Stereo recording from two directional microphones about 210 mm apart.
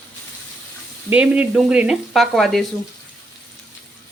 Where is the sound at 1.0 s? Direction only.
5° right (ahead or behind).